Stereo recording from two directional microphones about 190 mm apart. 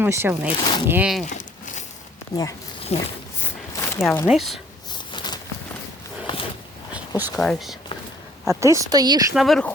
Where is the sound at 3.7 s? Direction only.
10° left (ahead or behind).